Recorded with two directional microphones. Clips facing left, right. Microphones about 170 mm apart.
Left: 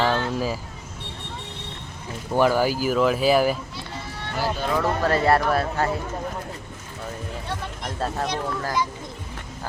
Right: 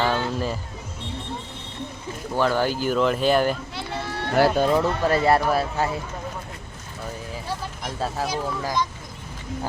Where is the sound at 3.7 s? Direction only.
70° right (ahead or behind).